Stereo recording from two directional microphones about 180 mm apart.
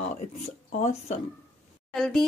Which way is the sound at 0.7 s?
40° left (ahead or behind).